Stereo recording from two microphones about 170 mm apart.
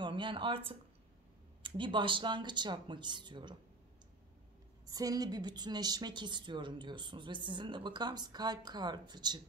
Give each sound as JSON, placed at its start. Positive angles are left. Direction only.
{"t": 0.0, "sound": "a woman's voice", "side_deg": -30}
{"t": 4.8, "sound": "a woman's voice", "side_deg": -20}